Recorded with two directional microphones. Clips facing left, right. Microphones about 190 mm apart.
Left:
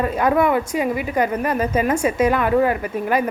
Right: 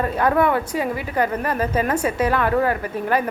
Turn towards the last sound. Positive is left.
turn(degrees=15)  # may be behind; listen again after turning